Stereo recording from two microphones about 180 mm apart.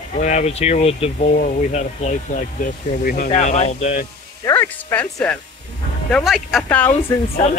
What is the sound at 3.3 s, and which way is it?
Speech, 40° left (ahead or behind).